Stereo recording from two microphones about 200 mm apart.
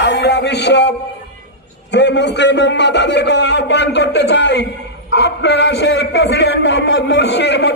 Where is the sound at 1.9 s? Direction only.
60° left (ahead or behind).